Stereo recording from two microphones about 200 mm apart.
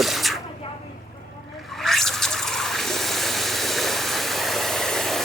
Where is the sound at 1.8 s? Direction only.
Centre (ahead or behind).